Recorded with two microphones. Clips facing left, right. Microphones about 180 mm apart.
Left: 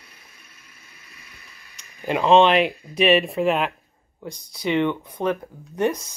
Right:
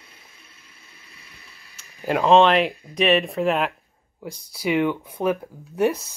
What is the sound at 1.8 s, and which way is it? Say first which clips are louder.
Speech: right 1 dB; centre (ahead or behind).